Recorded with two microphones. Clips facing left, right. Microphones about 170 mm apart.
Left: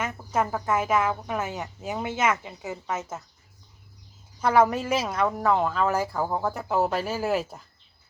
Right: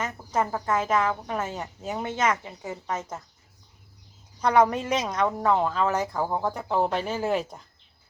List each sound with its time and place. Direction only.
0.2 s cricket: 10° right (ahead or behind)
0.6 s speech: 10° left (ahead or behind)
4.4 s speech: 5° left (ahead or behind)